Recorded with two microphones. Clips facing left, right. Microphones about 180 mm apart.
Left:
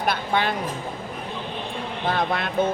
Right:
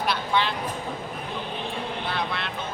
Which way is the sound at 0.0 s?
50° left (ahead or behind).